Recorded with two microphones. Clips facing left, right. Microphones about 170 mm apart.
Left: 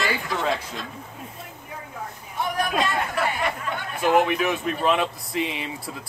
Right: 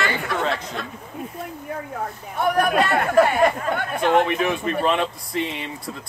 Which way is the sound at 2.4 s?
60° right (ahead or behind).